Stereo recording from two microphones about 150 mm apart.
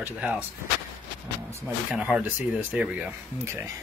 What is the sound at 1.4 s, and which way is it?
Speech, 20° right (ahead or behind).